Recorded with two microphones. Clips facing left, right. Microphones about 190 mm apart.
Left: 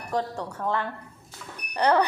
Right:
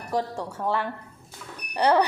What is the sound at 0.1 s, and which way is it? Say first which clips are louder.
Speech: right 1 dB; 10° right (ahead or behind).